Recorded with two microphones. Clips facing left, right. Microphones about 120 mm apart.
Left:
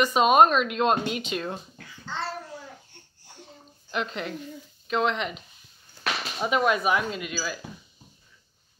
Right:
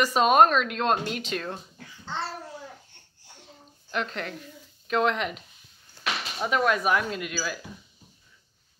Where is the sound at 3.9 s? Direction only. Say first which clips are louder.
Left 1 dB; 5° left (ahead or behind).